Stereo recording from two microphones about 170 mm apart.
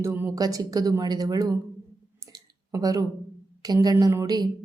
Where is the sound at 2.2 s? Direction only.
20° right (ahead or behind).